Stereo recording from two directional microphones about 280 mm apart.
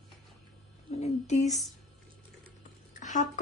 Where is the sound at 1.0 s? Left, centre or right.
Left.